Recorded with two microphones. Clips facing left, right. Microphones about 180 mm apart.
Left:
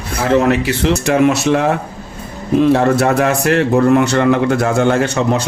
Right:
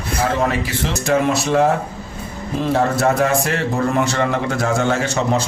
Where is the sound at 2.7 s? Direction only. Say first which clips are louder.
Left 1 dB; 70° left (ahead or behind).